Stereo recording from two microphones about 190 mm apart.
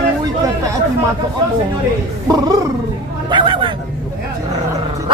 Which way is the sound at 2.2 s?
20° right (ahead or behind).